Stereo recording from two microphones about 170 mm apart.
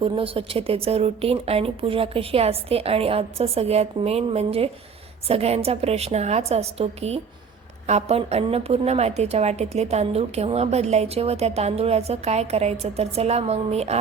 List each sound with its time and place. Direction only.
0.0 s a woman's voice: 35° right (ahead or behind)